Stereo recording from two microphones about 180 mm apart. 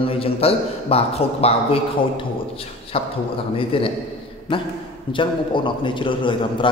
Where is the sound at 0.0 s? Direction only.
30° left (ahead or behind).